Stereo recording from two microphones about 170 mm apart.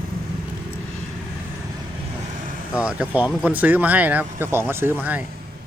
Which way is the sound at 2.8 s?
5° right (ahead or behind).